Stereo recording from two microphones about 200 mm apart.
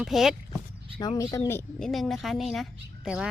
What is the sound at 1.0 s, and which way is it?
Speech, 20° left (ahead or behind).